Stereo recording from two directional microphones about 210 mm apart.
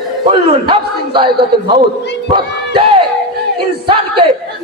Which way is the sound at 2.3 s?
25° right (ahead or behind).